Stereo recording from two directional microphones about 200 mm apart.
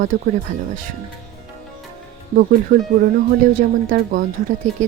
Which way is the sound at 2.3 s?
45° right (ahead or behind).